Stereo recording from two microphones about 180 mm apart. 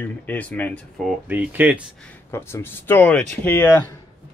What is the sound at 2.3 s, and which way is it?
Speech, 15° left (ahead or behind).